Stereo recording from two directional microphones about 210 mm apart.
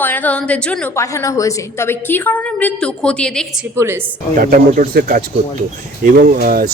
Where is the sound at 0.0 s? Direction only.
10° left (ahead or behind).